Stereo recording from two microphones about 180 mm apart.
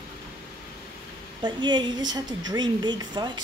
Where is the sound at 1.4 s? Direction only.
25° right (ahead or behind).